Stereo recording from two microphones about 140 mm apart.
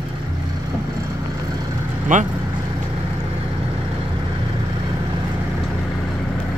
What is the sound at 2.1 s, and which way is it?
Speech, 65° right (ahead or behind).